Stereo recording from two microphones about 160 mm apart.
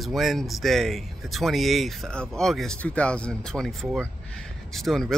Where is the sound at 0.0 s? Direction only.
Centre (ahead or behind).